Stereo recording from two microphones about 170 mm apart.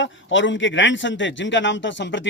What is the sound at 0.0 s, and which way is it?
A man's voice, 90° left.